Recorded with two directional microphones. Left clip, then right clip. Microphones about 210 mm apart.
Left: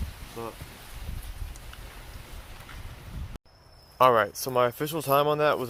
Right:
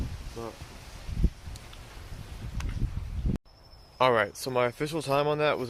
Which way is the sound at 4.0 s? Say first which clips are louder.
Left 3 dB; centre (ahead or behind).